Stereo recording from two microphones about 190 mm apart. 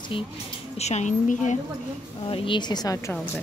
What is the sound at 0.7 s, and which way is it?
Speech, 35° left (ahead or behind).